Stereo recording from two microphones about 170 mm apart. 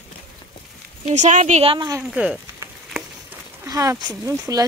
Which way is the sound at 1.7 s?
20° right (ahead or behind).